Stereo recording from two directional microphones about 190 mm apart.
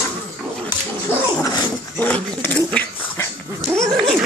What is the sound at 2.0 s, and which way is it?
Dog, 10° left (ahead or behind).